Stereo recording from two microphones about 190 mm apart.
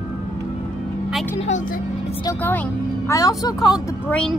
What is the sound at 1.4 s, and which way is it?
Speech, 40° left (ahead or behind).